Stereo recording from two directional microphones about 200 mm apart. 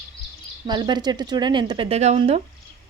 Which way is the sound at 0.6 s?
20° right (ahead or behind).